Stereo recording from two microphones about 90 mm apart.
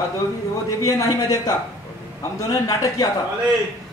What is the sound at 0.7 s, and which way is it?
A man's voice, 40° left (ahead or behind).